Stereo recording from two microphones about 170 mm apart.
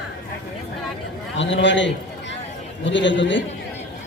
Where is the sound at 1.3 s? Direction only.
90° left.